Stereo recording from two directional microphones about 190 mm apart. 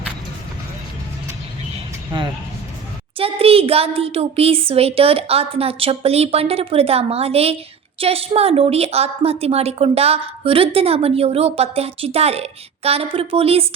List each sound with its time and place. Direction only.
3.2 s a woman's voice: 30° right (ahead or behind)